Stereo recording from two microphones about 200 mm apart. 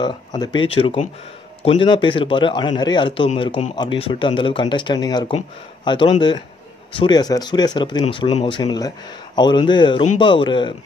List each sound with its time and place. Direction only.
0.0 s a man's voice: 20° left (ahead or behind)